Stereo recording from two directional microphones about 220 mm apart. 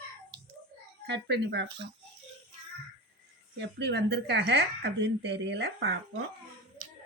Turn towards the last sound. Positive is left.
turn(degrees=-50)  # may be behind; listen again after turning